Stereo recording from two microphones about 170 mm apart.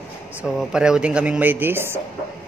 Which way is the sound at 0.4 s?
5° right (ahead or behind).